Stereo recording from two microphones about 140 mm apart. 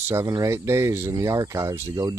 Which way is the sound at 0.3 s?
20° right (ahead or behind).